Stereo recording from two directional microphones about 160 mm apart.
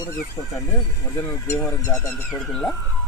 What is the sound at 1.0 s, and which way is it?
Speech, 15° left (ahead or behind).